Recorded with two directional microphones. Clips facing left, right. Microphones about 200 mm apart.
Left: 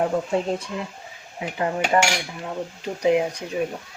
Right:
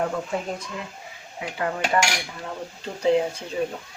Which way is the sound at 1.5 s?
25° left (ahead or behind).